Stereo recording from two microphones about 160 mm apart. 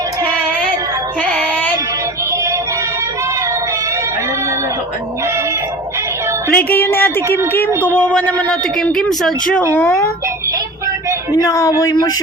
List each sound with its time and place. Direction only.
1.2 s female singing: 10° left (ahead or behind)
6.5 s speech: 10° left (ahead or behind)
11.3 s speech: 20° left (ahead or behind)